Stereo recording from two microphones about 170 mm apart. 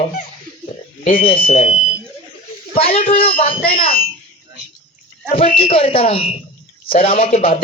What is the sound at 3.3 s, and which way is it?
Speech, 35° left (ahead or behind).